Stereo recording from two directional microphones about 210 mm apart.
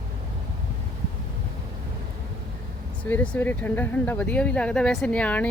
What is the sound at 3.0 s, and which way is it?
Speech, 10° left (ahead or behind).